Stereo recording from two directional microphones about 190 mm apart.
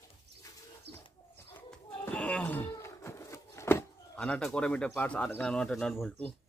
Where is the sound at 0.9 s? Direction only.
60° right (ahead or behind).